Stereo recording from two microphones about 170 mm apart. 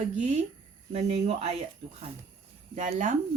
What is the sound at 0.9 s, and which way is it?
Speech, 35° right (ahead or behind).